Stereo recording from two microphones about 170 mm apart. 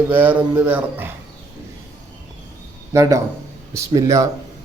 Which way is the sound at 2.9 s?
20° right (ahead or behind).